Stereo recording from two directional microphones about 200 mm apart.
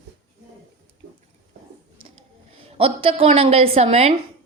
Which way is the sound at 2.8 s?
30° right (ahead or behind).